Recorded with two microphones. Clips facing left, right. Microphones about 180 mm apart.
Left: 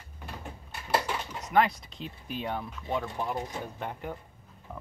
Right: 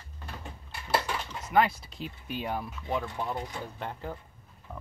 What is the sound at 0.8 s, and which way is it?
Dishes, 10° left (ahead or behind).